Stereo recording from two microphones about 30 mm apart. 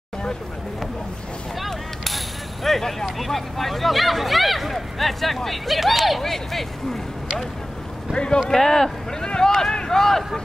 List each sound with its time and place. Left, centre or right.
1.6 s a sound: centre
3.2 s speech: centre
6.2 s speech: centre
8.1 s speech: left
8.5 s speech: centre
9.4 s a sound: centre
9.8 s speech: centre